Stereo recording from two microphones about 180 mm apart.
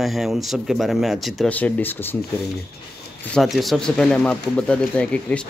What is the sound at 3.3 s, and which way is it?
Speech, centre (ahead or behind).